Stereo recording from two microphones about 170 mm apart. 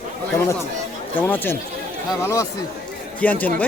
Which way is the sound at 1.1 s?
10° left (ahead or behind).